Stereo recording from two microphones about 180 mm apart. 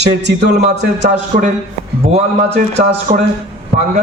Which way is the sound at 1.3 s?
35° right (ahead or behind).